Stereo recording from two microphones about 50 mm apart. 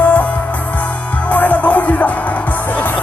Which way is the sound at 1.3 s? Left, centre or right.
Left.